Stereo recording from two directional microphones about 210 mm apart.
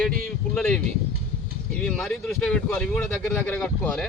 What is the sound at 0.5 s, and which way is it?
A man's voice, 5° left (ahead or behind).